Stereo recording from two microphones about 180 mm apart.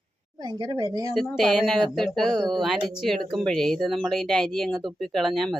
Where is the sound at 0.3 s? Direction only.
20° right (ahead or behind).